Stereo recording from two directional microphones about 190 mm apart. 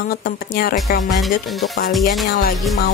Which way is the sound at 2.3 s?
50° left (ahead or behind).